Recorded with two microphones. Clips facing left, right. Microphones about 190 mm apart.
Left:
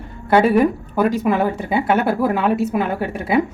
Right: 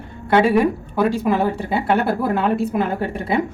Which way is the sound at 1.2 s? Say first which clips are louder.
Left 1 dB; centre (ahead or behind).